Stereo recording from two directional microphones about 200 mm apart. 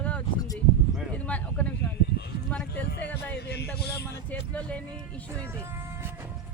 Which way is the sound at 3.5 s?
55° left (ahead or behind).